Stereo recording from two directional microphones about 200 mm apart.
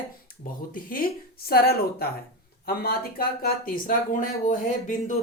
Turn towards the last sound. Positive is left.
turn(degrees=40)  # may be behind; listen again after turning